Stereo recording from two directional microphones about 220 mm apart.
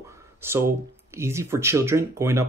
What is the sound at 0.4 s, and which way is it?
Speech, 10° right (ahead or behind).